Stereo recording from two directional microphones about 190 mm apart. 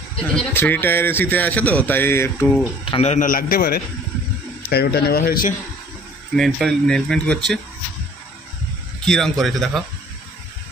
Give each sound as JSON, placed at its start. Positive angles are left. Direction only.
{"t": 0.2, "sound": "a man's voice", "side_deg": 5}
{"t": 2.8, "sound": "a man's voice", "side_deg": 30}
{"t": 6.3, "sound": "speech", "side_deg": 0}
{"t": 9.0, "sound": "speech", "side_deg": 0}